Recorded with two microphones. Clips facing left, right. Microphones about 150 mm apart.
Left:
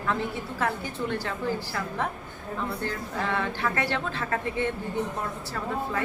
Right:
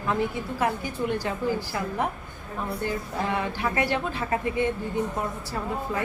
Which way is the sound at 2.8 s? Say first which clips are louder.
Right 2 dB; 15° right (ahead or behind).